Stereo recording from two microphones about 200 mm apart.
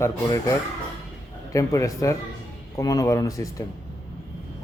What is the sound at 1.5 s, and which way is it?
Speech, 15° left (ahead or behind).